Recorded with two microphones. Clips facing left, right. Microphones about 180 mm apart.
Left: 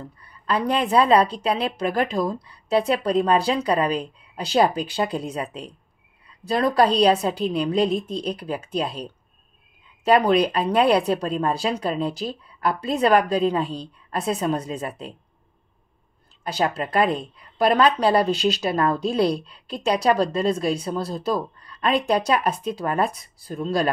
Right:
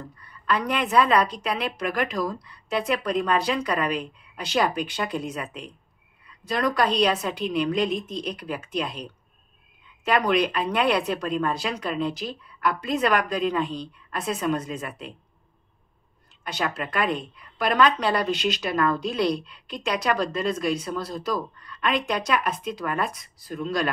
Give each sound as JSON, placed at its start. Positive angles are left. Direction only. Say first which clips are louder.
{"t": 0.2, "sound": "a woman's voice", "louder": "left 2 dB", "side_deg": 30}
{"t": 16.4, "sound": "a woman's voice", "louder": "left 5 dB", "side_deg": 35}